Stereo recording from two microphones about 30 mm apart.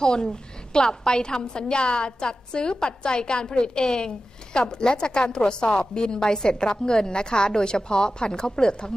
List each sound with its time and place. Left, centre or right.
0.0 s a woman's voice: left
3.8 s a woman's voice: centre